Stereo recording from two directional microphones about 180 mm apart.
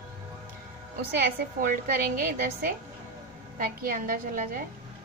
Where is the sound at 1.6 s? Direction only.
55° right (ahead or behind).